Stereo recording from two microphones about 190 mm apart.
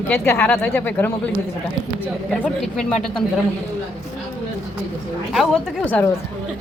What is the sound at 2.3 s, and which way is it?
Speech, centre (ahead or behind).